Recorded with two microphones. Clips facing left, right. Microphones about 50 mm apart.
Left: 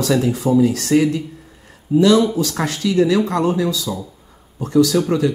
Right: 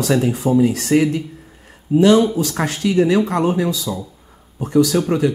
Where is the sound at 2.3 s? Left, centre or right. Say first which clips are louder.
Even; right.